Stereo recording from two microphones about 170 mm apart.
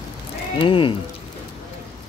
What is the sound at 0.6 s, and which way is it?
Speech, 30° left (ahead or behind).